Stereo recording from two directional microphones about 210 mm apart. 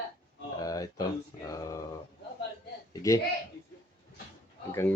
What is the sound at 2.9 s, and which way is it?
Speech, 15° left (ahead or behind).